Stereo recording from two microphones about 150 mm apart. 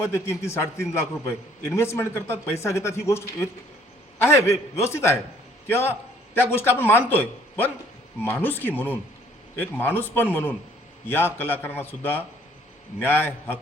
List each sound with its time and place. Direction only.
0.0 s a man's voice: 15° left (ahead or behind)
5.6 s a sound: 15° left (ahead or behind)
6.5 s a man's voice: 15° left (ahead or behind)